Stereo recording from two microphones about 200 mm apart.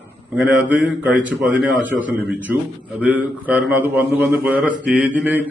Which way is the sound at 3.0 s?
5° right (ahead or behind).